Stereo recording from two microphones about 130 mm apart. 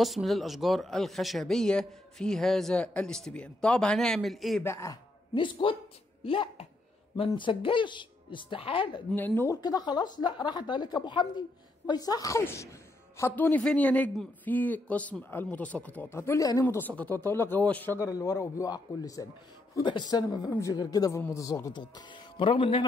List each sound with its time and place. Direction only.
0.0 s speech: centre (ahead or behind)
4.6 s a man's voice: 20° left (ahead or behind)
5.3 s a woman's voice: 40° left (ahead or behind)
9.1 s speech: 15° left (ahead or behind)
9.6 s a woman's voice: 30° left (ahead or behind)
16.6 s speech: 15° left (ahead or behind)
18.0 s a man's voice: 25° left (ahead or behind); by 22.8 s 40° left (ahead or behind)